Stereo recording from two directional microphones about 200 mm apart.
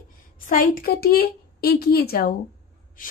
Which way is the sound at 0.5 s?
45° left (ahead or behind).